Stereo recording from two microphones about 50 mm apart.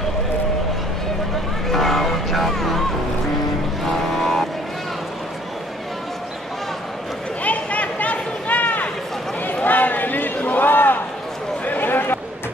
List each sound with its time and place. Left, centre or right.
1.7 s vehicle: centre
3.8 s vehicle: centre
7.4 s a sound: left